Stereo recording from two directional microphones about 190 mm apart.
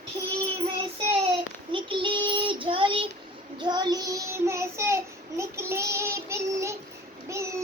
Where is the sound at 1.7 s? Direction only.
25° right (ahead or behind).